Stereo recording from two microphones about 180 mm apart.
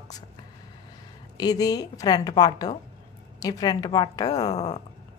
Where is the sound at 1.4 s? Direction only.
20° left (ahead or behind).